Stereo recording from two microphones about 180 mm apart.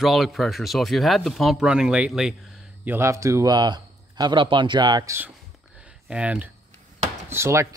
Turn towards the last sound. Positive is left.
turn(degrees=-15)  # may be behind; listen again after turning